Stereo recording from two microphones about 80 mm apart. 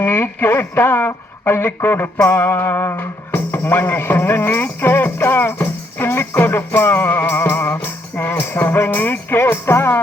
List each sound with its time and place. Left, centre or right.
0.0 s speech: left